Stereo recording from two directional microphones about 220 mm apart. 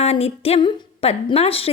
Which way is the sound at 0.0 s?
30° left (ahead or behind).